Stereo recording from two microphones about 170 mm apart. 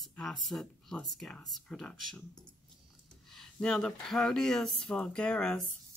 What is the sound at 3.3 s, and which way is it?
Speech, centre (ahead or behind).